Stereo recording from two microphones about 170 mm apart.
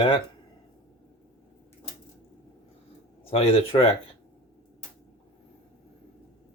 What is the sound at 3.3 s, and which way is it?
Speech, 35° left (ahead or behind).